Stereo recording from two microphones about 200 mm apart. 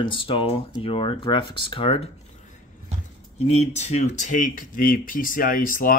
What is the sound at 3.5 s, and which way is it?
Speech, 35° left (ahead or behind).